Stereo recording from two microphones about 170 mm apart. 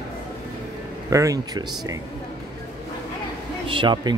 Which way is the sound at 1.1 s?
20° right (ahead or behind).